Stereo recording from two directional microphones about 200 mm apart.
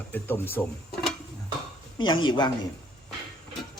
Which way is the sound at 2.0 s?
25° left (ahead or behind).